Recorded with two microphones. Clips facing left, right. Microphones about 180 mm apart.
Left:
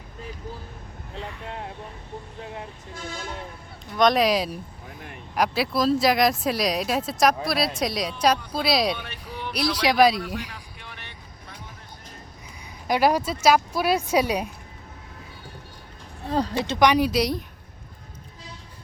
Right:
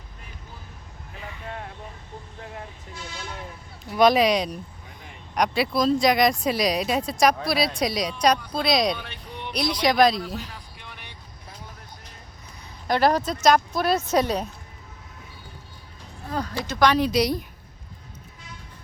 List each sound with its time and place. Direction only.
1.2 s vehicle: centre (ahead or behind)
2.9 s speech: 45° left (ahead or behind)
3.9 s speech: 5° right (ahead or behind)
4.9 s vehicle: 60° left (ahead or behind)
5.3 s speech: centre (ahead or behind)
12.9 s speech: 10° left (ahead or behind)
16.3 s speech: 25° left (ahead or behind)
16.8 s speech: 15° left (ahead or behind)
17.1 s speech: centre (ahead or behind)